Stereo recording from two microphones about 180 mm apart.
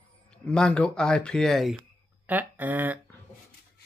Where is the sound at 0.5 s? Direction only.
5° left (ahead or behind).